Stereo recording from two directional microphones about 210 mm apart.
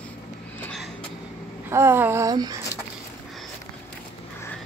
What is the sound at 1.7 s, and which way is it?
Speech, 10° right (ahead or behind).